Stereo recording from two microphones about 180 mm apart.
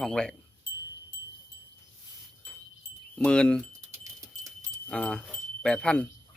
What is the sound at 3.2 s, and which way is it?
Speech, 5° left (ahead or behind).